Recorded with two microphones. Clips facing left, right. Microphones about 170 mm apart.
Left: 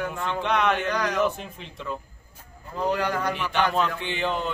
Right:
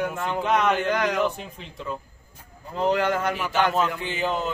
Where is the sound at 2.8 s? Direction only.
20° right (ahead or behind).